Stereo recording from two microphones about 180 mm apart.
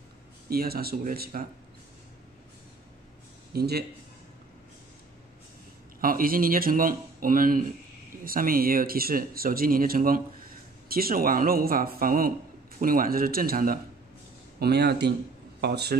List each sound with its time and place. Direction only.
0.5 s speech: 60° right (ahead or behind)
3.5 s speech: 60° right (ahead or behind)
5.9 s speech: 50° right (ahead or behind)
14.6 s speech: 65° right (ahead or behind)